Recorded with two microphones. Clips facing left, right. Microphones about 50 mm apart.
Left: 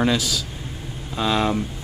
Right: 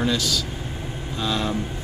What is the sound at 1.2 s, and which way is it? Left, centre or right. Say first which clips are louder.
Speech: left 4 dB; centre.